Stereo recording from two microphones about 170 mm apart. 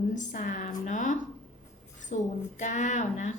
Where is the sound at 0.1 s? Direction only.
45° left (ahead or behind).